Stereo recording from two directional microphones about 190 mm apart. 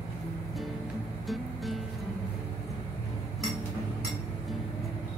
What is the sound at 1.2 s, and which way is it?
Music, centre (ahead or behind).